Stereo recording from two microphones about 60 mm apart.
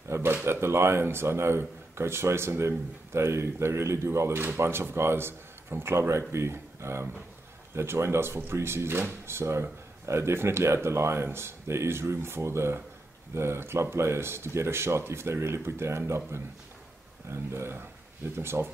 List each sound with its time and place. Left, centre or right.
0.1 s speech: right
17.3 s speech: right